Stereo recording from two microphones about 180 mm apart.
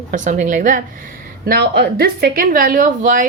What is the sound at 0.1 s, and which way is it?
Speech, 45° right (ahead or behind).